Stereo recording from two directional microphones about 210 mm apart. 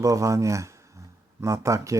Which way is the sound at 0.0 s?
15° right (ahead or behind).